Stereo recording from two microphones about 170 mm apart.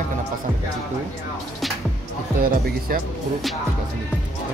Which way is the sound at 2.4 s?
60° right (ahead or behind).